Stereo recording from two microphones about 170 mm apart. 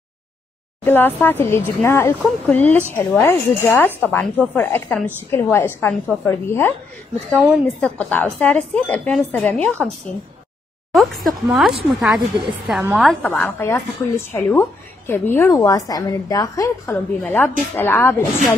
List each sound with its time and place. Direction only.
0.8 s a woman's voice: 10° left (ahead or behind)
7.3 s a woman's voice: 10° right (ahead or behind)
7.8 s a woman's voice: 10° left (ahead or behind)
11.2 s a woman's voice: centre (ahead or behind)